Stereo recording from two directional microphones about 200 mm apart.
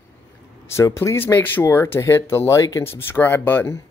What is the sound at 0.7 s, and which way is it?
Speech, 15° left (ahead or behind).